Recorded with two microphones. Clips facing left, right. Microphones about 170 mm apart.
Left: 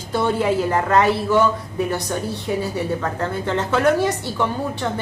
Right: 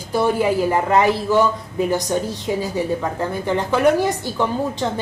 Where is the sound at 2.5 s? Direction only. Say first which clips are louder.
Right 1 dB; 20° right (ahead or behind).